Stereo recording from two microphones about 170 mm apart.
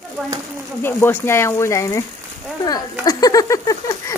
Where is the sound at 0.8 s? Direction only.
15° left (ahead or behind).